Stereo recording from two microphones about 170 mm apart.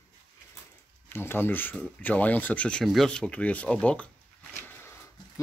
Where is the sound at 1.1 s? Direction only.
15° left (ahead or behind).